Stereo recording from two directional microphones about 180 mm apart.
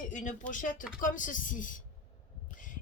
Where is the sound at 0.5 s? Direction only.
50° left (ahead or behind).